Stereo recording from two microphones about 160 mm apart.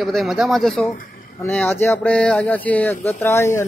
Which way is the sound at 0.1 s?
Centre (ahead or behind).